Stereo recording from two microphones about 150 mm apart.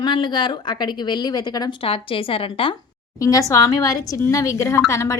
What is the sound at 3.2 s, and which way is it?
A woman's voice, 25° left (ahead or behind).